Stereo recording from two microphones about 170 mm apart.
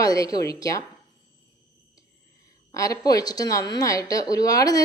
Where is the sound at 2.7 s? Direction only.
20° left (ahead or behind).